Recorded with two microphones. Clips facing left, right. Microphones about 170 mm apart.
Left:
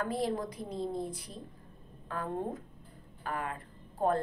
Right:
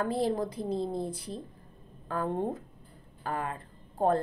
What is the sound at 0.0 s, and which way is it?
A woman's voice, 30° right (ahead or behind).